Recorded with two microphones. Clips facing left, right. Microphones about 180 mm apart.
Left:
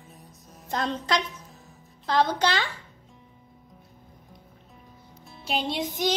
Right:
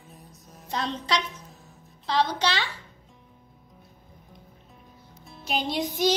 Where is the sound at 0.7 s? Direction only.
50° left (ahead or behind).